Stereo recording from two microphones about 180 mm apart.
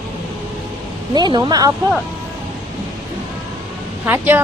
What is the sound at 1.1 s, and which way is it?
Speech, 25° right (ahead or behind).